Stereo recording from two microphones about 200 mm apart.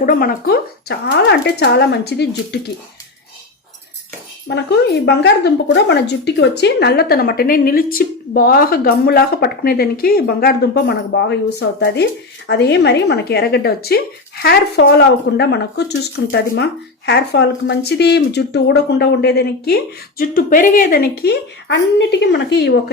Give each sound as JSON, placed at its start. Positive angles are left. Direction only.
{"t": 0.0, "sound": "speech", "side_deg": 45}
{"t": 4.4, "sound": "speech", "side_deg": 60}
{"t": 16.2, "sound": "speech", "side_deg": 70}
{"t": 17.1, "sound": "speech", "side_deg": 60}